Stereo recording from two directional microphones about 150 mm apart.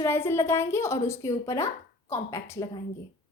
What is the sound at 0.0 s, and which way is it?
A woman's voice, 15° left (ahead or behind).